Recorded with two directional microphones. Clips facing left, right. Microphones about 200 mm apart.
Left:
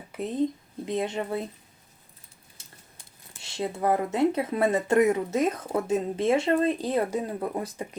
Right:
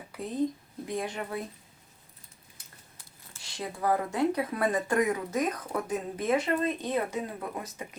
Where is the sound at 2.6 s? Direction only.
25° left (ahead or behind).